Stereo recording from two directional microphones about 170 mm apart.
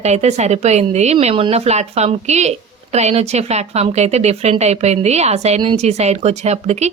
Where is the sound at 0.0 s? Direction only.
40° right (ahead or behind).